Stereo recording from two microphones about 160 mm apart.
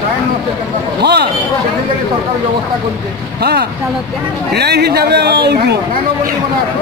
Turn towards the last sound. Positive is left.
turn(degrees=-90)